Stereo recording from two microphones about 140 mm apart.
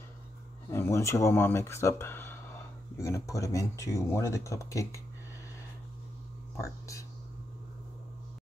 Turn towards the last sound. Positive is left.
turn(degrees=20)  # may be behind; listen again after turning